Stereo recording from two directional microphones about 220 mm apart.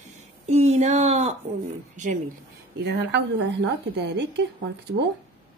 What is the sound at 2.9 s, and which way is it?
A woman's voice, 50° right (ahead or behind).